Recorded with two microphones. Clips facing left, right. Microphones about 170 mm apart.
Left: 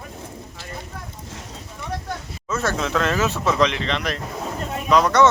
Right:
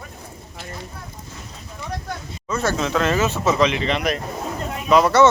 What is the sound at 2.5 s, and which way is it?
Speech, centre (ahead or behind).